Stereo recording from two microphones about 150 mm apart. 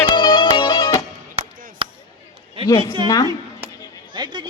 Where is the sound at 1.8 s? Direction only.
35° right (ahead or behind).